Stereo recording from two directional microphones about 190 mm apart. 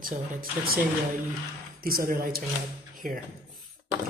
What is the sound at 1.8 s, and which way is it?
Speech, 50° right (ahead or behind).